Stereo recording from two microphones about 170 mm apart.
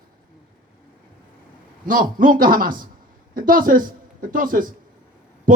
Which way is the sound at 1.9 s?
55° right (ahead or behind).